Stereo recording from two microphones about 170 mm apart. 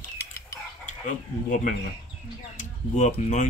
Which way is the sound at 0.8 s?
50° left (ahead or behind).